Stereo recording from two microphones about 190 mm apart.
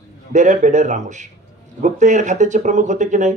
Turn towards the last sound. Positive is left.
turn(degrees=-40)  # may be behind; listen again after turning